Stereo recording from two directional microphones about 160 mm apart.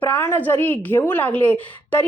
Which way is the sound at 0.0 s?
15° left (ahead or behind).